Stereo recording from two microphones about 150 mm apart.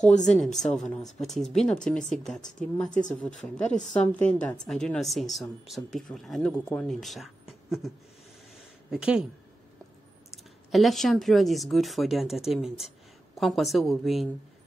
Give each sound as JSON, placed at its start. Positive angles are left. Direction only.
{"t": 0.1, "sound": "speech", "side_deg": 50}
{"t": 0.4, "sound": "speech", "side_deg": 5}
{"t": 8.9, "sound": "speech", "side_deg": -5}
{"t": 10.3, "sound": "speech", "side_deg": 0}